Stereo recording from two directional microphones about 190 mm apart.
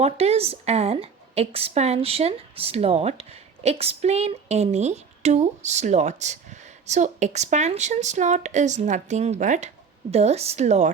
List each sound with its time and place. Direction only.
0.0 s a woman's voice: 35° right (ahead or behind)